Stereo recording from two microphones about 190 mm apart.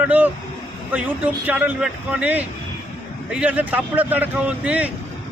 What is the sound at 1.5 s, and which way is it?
Speech, 10° right (ahead or behind).